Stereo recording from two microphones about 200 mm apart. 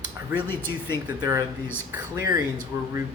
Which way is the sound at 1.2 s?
15° right (ahead or behind).